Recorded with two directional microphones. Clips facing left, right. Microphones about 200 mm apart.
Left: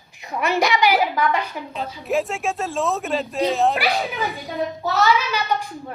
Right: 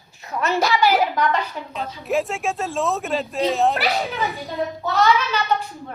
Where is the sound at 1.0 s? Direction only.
5° left (ahead or behind).